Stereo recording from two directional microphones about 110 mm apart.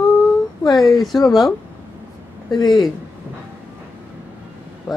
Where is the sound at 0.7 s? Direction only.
Centre (ahead or behind).